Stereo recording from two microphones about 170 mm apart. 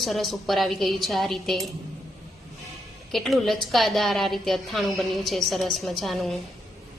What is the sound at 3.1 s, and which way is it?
A woman's voice, centre (ahead or behind).